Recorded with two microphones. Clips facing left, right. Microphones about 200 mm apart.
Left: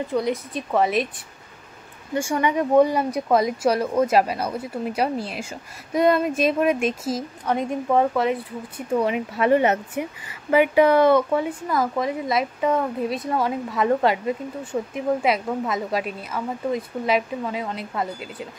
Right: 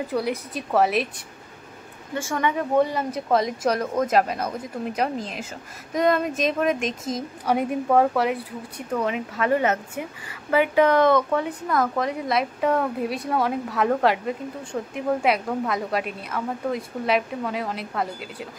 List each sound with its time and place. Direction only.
0.1 s a woman's voice: 5° right (ahead or behind)
2.1 s a woman's voice: 15° left (ahead or behind)
7.4 s a woman's voice: 5° right (ahead or behind)
9.0 s a woman's voice: 15° left (ahead or behind); by 18.5 s centre (ahead or behind)